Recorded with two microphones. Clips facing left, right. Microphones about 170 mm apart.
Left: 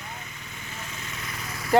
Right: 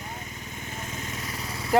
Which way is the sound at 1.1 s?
40° right (ahead or behind).